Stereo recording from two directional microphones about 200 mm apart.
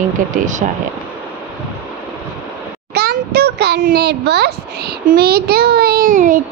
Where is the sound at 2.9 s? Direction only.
50° right (ahead or behind).